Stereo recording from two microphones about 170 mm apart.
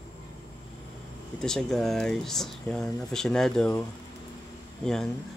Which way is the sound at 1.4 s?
5° left (ahead or behind).